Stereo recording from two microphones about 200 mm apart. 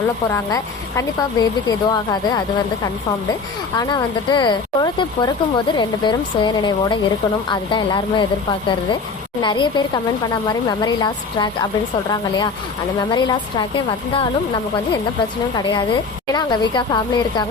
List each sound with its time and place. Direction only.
0.3 s speech: 15° left (ahead or behind)
3.8 s speech: 20° left (ahead or behind)
9.4 s speech: 25° left (ahead or behind)
13.1 s speech: 20° left (ahead or behind)
16.3 s speech: 20° left (ahead or behind)